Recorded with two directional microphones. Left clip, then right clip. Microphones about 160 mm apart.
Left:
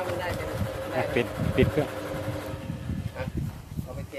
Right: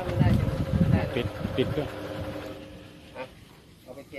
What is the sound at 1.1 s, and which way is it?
Speech, 20° left (ahead or behind).